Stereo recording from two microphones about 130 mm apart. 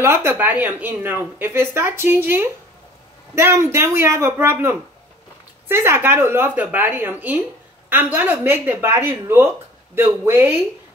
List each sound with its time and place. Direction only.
0.0 s a man's voice: 20° right (ahead or behind)